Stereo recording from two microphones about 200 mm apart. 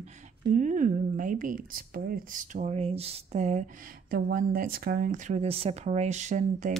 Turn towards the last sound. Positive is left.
turn(degrees=-35)  # may be behind; listen again after turning